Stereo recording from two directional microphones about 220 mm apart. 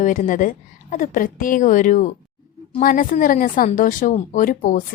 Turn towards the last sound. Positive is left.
turn(degrees=40)  # may be behind; listen again after turning